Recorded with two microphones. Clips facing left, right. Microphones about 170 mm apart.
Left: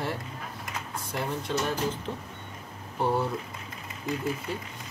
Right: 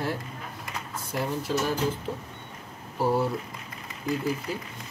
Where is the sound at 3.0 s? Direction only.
5° right (ahead or behind).